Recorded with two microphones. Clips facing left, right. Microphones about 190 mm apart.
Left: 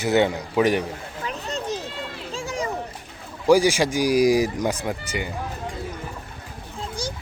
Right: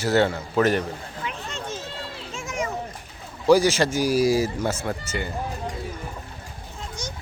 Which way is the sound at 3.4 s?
10° left (ahead or behind).